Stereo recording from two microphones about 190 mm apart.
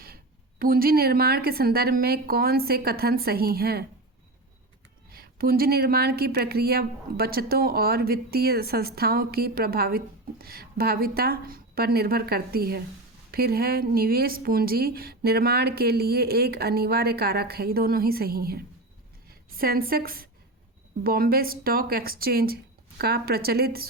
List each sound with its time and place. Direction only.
0.6 s a woman's voice: 50° right (ahead or behind)
5.1 s a woman's voice: 50° right (ahead or behind)